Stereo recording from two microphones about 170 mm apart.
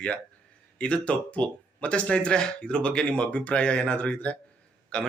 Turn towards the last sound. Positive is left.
turn(degrees=5)  # may be behind; listen again after turning